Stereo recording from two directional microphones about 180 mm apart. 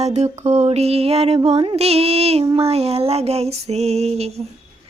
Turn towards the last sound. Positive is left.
turn(degrees=-35)  # may be behind; listen again after turning